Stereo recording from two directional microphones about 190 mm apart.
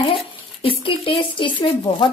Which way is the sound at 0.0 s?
30° left (ahead or behind).